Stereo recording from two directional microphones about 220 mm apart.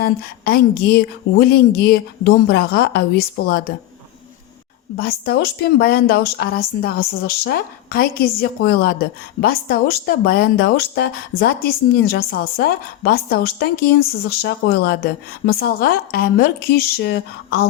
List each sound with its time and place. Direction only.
0.0 s speech: 45° left (ahead or behind)
4.9 s speech: 45° left (ahead or behind)